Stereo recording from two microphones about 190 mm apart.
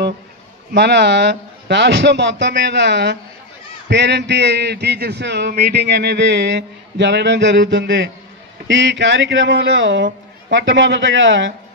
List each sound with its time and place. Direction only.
0.7 s a man's voice: 65° right (ahead or behind)